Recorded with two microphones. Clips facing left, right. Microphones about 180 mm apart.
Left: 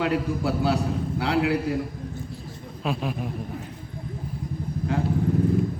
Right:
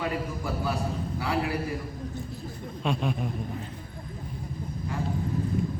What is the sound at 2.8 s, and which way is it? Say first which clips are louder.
Speech: left 1 dB; 5° left (ahead or behind).